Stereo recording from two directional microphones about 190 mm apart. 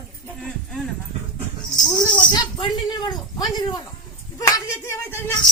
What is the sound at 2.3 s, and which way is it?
Speech, 20° left (ahead or behind).